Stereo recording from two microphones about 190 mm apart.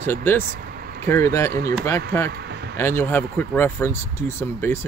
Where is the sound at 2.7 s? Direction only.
10° left (ahead or behind).